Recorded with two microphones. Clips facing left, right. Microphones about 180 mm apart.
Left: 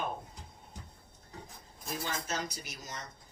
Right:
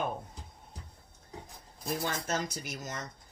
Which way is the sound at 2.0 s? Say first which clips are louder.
Right 2 dB; 50° right (ahead or behind).